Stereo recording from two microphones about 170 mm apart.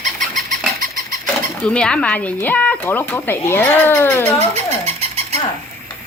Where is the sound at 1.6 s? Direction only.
5° left (ahead or behind).